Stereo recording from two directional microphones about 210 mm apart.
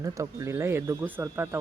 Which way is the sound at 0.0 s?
15° right (ahead or behind).